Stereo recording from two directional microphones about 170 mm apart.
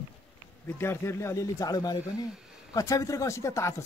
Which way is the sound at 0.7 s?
15° left (ahead or behind).